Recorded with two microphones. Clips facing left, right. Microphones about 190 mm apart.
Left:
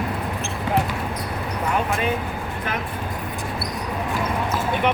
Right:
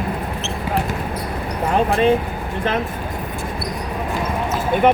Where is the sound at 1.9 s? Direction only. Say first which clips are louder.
Right 8 dB; 35° right (ahead or behind).